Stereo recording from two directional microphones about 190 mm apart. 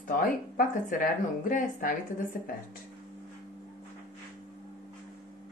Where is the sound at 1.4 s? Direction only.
45° left (ahead or behind).